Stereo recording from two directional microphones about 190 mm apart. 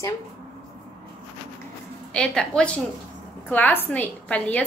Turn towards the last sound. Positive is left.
turn(degrees=5)  # may be behind; listen again after turning